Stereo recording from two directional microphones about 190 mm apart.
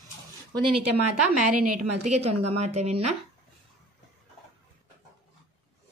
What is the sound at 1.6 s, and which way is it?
A woman's voice, 40° right (ahead or behind).